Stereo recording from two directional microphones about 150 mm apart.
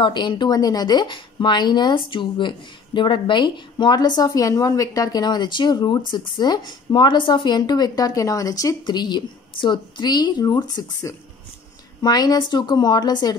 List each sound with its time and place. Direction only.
0.0 s a woman's voice: 30° left (ahead or behind)